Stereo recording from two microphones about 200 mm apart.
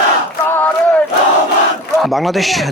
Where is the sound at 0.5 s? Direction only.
10° left (ahead or behind).